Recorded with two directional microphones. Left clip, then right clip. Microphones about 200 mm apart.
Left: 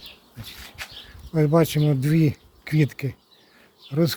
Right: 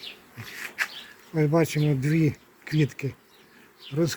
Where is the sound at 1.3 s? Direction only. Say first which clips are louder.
Left 3 dB; 60° left (ahead or behind).